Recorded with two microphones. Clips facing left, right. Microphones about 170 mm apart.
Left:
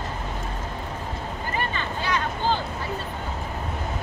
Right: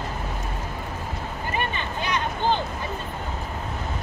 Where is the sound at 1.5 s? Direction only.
20° right (ahead or behind).